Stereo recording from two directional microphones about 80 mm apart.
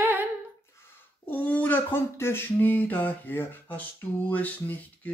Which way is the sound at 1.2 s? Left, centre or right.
Centre.